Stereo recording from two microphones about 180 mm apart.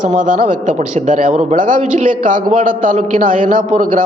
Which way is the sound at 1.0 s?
40° right (ahead or behind).